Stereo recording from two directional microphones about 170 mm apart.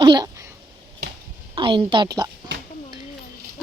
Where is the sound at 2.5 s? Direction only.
90° right.